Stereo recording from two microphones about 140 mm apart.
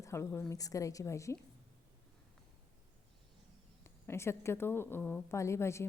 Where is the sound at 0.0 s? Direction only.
20° left (ahead or behind).